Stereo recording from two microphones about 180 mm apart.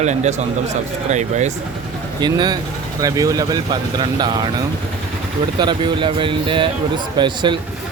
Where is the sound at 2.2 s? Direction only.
25° right (ahead or behind).